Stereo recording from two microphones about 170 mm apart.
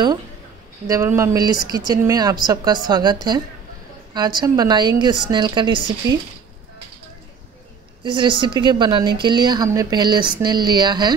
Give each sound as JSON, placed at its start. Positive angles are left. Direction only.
{"t": 0.8, "sound": "a woman's voice", "side_deg": -20}
{"t": 8.0, "sound": "a woman's voice", "side_deg": -30}